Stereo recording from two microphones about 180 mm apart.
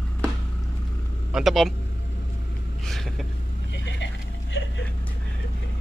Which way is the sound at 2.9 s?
Centre (ahead or behind).